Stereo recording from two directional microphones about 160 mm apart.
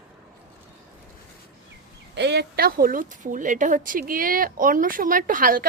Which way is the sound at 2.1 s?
90° right.